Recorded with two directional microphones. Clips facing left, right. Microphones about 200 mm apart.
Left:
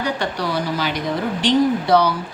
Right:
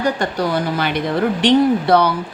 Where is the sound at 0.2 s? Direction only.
50° right (ahead or behind).